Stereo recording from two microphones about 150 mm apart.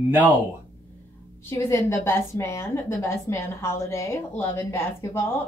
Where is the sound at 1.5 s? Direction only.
15° left (ahead or behind).